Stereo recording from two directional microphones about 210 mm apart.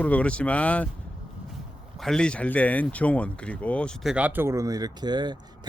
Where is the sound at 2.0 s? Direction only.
5° left (ahead or behind).